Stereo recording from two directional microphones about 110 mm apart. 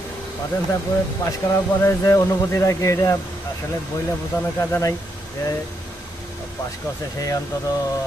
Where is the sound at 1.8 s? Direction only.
25° left (ahead or behind).